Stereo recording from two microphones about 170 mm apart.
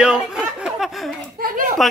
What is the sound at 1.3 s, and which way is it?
Speech, 55° right (ahead or behind).